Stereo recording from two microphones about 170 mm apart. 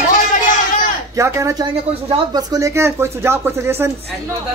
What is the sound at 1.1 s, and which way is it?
Speech, 15° right (ahead or behind).